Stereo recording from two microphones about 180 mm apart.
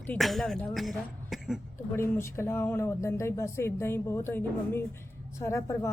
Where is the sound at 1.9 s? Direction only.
15° left (ahead or behind).